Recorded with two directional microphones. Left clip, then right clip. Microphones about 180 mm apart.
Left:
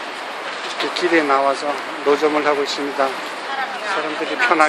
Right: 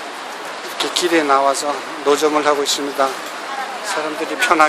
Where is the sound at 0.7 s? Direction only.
10° right (ahead or behind).